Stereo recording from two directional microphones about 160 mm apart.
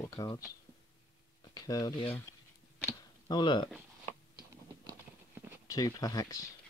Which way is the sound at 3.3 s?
25° left (ahead or behind).